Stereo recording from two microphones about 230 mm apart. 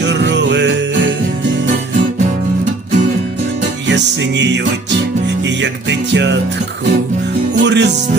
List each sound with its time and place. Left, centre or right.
0.0 s music: right
3.8 s music: right
5.9 s music: right
7.6 s music: right